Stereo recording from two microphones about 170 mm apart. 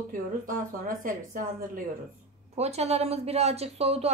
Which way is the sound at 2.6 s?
40° right (ahead or behind).